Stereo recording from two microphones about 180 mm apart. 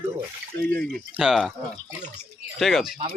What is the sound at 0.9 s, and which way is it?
Speech, centre (ahead or behind).